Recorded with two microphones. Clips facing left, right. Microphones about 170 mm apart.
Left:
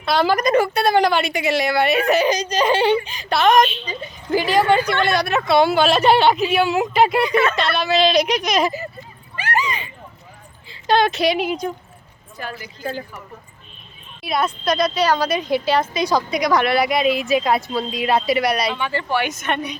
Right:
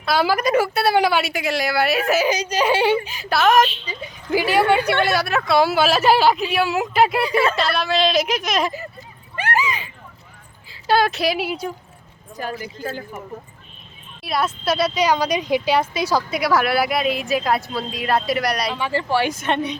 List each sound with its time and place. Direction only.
0.0 s a woman's voice: 5° right (ahead or behind)
7.3 s speech: 30° right (ahead or behind)
7.5 s a woman's voice: centre (ahead or behind)
9.6 s a sound: 5° right (ahead or behind)
10.7 s speech: 5° right (ahead or behind)
12.4 s speech: 40° right (ahead or behind)
14.3 s a woman's voice: centre (ahead or behind)
18.8 s a woman's voice: 30° right (ahead or behind)